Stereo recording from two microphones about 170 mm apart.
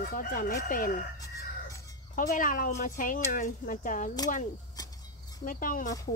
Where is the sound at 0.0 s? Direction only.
55° left (ahead or behind).